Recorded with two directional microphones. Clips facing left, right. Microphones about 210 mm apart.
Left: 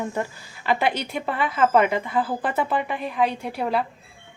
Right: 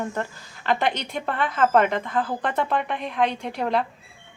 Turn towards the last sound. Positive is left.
turn(degrees=5)  # may be behind; listen again after turning